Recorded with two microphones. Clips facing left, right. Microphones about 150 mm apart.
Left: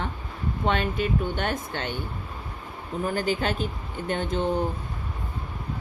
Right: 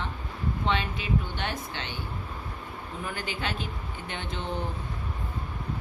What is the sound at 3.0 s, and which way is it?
A woman's voice, 40° left (ahead or behind).